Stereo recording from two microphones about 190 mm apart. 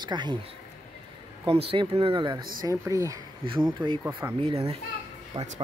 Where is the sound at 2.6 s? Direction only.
15° right (ahead or behind).